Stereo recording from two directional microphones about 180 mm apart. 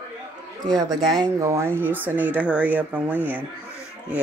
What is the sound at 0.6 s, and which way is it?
Speech, 20° right (ahead or behind).